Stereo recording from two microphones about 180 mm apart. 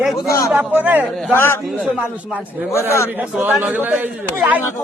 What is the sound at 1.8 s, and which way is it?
A man's voice, 10° right (ahead or behind).